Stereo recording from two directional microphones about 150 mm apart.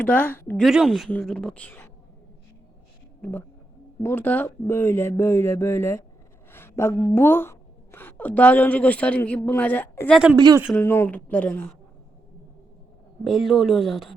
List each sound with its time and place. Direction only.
0.0 s speech: 10° left (ahead or behind)
0.6 s a woman's voice: 5° right (ahead or behind)
3.2 s a woman's voice: 15° left (ahead or behind)
10.1 s a woman's voice: 5° right (ahead or behind)
10.3 s speech: 25° right (ahead or behind)
10.8 s speech: 15° left (ahead or behind)
13.2 s a woman's voice: centre (ahead or behind)